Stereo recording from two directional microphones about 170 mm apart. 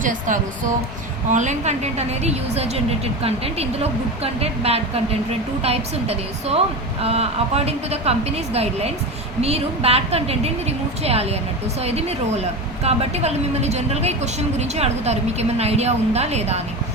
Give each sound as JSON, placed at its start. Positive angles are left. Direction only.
{"t": 0.0, "sound": "a woman's voice", "side_deg": -50}
{"t": 9.4, "sound": "a woman's voice", "side_deg": -35}